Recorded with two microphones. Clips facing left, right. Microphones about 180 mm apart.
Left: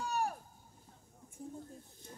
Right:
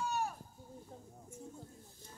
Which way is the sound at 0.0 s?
35° left (ahead or behind).